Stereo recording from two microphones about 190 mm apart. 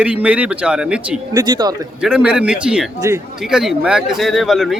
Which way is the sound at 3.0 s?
15° right (ahead or behind).